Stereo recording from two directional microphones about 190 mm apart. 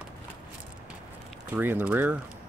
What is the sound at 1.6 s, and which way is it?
Speech, 10° right (ahead or behind).